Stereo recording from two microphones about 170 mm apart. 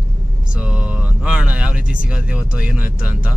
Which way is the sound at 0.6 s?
5° right (ahead or behind).